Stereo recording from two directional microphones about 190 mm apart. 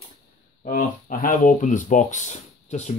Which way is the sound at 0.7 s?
45° left (ahead or behind).